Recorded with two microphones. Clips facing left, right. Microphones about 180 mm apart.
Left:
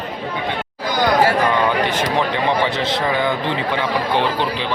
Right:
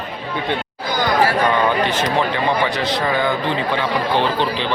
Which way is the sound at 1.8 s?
15° left (ahead or behind).